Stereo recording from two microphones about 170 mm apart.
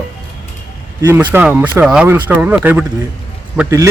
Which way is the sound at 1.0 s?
15° right (ahead or behind).